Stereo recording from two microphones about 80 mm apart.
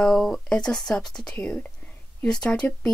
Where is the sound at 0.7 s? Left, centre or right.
Centre.